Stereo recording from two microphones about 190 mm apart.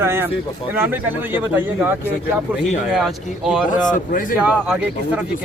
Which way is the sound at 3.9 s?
45° left (ahead or behind).